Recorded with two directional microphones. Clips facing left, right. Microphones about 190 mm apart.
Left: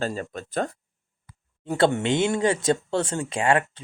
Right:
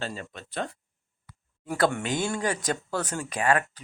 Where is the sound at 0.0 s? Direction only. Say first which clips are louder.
Left 7 dB; 45° left (ahead or behind).